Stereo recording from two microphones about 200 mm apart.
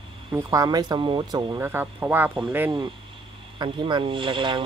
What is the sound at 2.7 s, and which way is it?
Speech, 25° right (ahead or behind).